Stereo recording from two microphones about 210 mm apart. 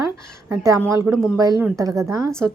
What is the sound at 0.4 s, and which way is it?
A woman's voice, 10° right (ahead or behind).